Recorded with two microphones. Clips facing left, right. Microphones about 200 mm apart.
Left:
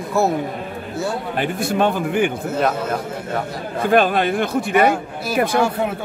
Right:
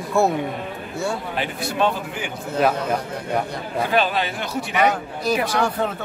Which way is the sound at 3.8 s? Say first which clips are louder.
Left 7 dB; 50° left (ahead or behind).